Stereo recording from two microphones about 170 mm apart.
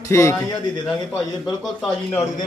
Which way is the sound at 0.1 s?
15° left (ahead or behind).